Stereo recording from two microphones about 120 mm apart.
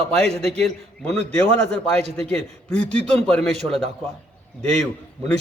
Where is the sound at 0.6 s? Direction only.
5° left (ahead or behind).